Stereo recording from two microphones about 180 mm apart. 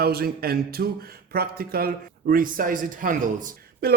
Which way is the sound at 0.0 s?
60° right (ahead or behind).